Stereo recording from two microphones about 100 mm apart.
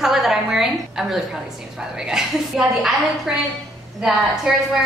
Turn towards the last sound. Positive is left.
turn(degrees=-5)  # may be behind; listen again after turning